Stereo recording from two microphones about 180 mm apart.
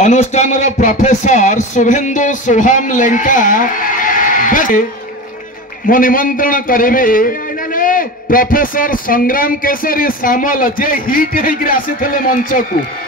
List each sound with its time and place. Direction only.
0.0 s a man's voice: 40° left (ahead or behind)
5.9 s a man's voice: 50° left (ahead or behind)